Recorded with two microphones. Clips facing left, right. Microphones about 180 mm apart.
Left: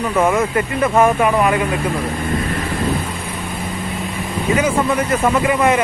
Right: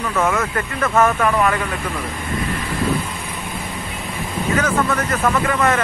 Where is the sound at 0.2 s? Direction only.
15° left (ahead or behind).